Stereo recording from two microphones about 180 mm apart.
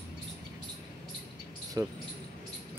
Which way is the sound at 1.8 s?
20° right (ahead or behind).